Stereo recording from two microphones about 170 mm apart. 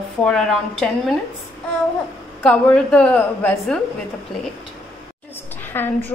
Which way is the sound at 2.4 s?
5° left (ahead or behind).